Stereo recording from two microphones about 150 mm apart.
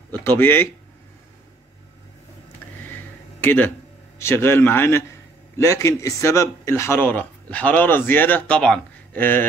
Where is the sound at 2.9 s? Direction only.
10° left (ahead or behind).